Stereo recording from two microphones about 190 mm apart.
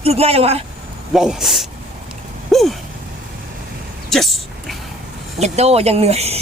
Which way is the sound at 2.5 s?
Centre (ahead or behind).